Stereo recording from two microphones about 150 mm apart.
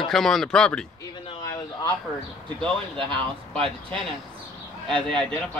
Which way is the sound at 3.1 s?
35° right (ahead or behind).